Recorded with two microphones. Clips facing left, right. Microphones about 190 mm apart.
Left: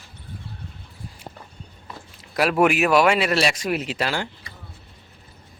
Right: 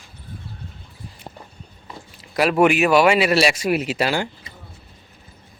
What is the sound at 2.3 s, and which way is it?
Speech, centre (ahead or behind).